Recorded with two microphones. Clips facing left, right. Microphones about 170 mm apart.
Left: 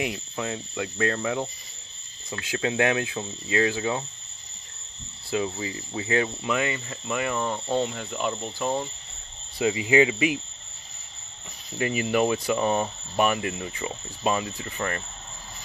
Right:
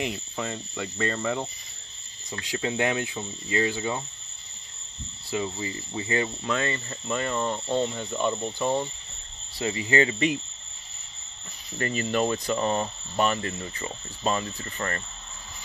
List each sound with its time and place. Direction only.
0.0 s speech: centre (ahead or behind)
2.6 s speech: 10° left (ahead or behind)
3.4 s speech: 90° left
3.7 s speech: 5° left (ahead or behind)
5.3 s speech: 5° left (ahead or behind)
9.6 s speech: 15° left (ahead or behind)
11.8 s speech: 10° left (ahead or behind)